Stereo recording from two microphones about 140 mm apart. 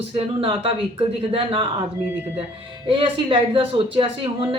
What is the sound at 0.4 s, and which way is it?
Speech, 40° right (ahead or behind).